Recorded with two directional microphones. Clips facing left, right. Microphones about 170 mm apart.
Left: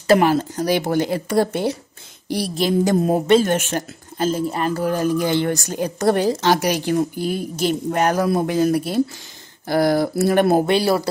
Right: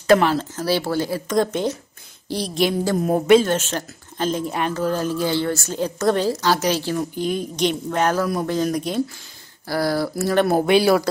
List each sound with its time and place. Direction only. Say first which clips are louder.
0.0 s speech: left 1 dB; 5° left (ahead or behind)
1.3 s a woman's voice: even; 10° left (ahead or behind)
4.7 s a woman's voice: left 3 dB; 15° left (ahead or behind)
7.2 s a woman's voice: even; 5° left (ahead or behind)
9.7 s speech: left 4 dB; 20° left (ahead or behind)